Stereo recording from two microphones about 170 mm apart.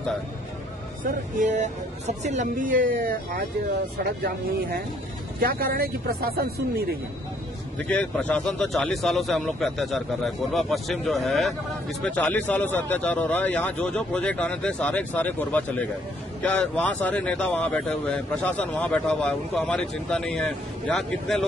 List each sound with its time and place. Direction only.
1.4 s speech: 45° right (ahead or behind)
5.4 s speech: 60° right (ahead or behind)
7.9 s speech: 5° left (ahead or behind)